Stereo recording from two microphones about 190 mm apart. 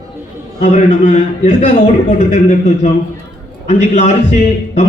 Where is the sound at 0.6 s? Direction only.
40° left (ahead or behind).